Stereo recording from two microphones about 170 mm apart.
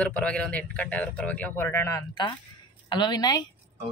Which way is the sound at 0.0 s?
10° left (ahead or behind).